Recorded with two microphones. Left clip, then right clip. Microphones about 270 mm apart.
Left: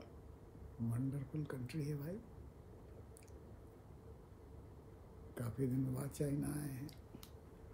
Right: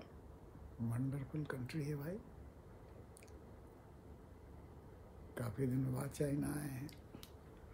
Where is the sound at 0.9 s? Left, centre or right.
Centre.